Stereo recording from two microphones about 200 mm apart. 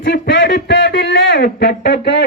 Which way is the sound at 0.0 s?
55° left (ahead or behind).